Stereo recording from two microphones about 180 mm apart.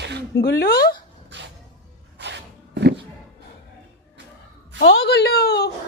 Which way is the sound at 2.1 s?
75° right (ahead or behind).